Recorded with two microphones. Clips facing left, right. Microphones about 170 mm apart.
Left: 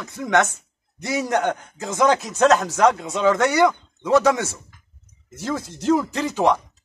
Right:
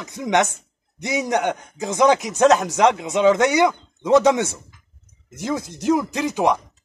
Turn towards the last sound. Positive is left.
turn(degrees=-15)  # may be behind; listen again after turning